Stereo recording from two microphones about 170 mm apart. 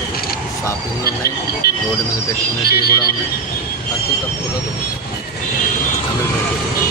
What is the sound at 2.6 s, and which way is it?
Speech, 65° left (ahead or behind).